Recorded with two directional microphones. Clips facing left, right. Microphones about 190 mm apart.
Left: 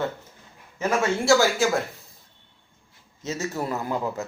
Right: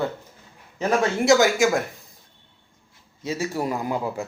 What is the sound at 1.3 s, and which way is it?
Speech, 15° right (ahead or behind).